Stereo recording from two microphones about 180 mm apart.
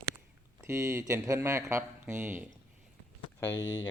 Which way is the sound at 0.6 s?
15° right (ahead or behind).